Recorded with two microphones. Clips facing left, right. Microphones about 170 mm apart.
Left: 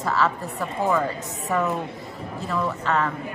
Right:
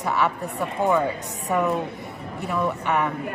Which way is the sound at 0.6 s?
Centre (ahead or behind).